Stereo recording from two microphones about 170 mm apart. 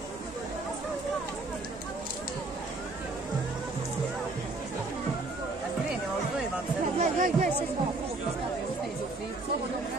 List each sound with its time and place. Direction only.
7.0 s music: 45° right (ahead or behind)